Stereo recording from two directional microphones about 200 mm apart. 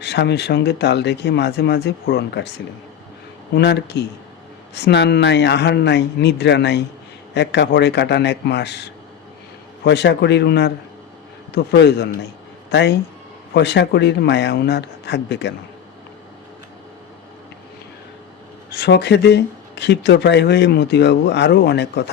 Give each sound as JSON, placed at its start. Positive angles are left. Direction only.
{"t": 0.0, "sound": "speech", "side_deg": 60}
{"t": 18.7, "sound": "speech", "side_deg": 55}